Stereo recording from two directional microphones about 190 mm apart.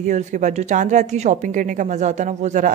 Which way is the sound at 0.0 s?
40° right (ahead or behind).